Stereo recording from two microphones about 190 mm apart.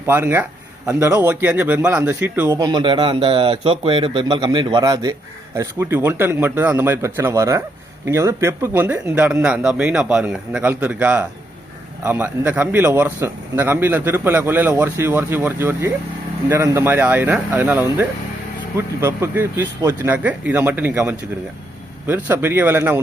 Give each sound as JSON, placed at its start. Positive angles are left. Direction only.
{"t": 0.1, "sound": "a man's voice", "side_deg": -10}